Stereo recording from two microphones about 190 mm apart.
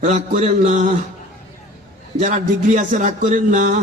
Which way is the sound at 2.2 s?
40° right (ahead or behind).